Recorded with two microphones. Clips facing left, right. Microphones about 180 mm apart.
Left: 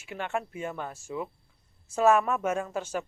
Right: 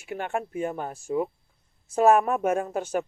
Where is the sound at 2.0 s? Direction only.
55° right (ahead or behind).